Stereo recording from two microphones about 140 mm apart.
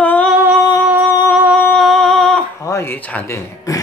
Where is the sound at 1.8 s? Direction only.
5° left (ahead or behind).